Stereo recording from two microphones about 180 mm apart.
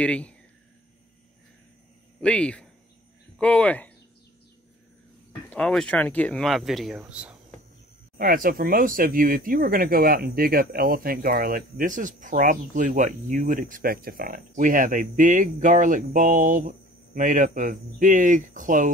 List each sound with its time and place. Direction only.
0.0 s speech: 5° left (ahead or behind)
2.2 s speech: 5° left (ahead or behind)
5.5 s speech: 5° left (ahead or behind)
8.2 s speech: 55° right (ahead or behind)